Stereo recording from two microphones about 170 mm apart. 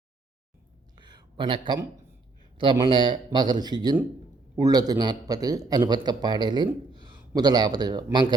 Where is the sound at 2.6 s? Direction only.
30° right (ahead or behind).